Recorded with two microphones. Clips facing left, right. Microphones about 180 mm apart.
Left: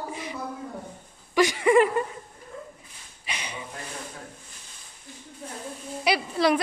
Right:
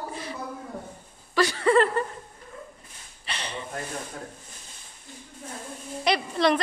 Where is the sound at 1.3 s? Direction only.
15° left (ahead or behind).